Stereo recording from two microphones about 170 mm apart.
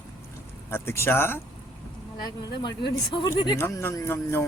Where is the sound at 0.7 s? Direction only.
15° left (ahead or behind).